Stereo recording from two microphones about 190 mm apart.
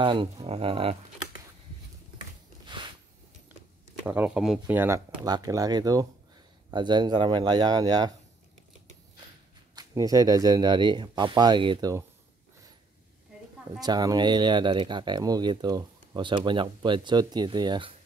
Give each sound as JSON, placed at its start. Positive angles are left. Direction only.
{"t": 0.0, "sound": "speech", "side_deg": -25}
{"t": 2.6, "sound": "a sound", "side_deg": -25}
{"t": 4.0, "sound": "speech", "side_deg": -10}
{"t": 9.8, "sound": "speech", "side_deg": -20}
{"t": 13.7, "sound": "speech", "side_deg": -20}